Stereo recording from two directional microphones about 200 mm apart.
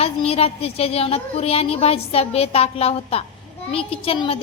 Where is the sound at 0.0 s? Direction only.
30° left (ahead or behind).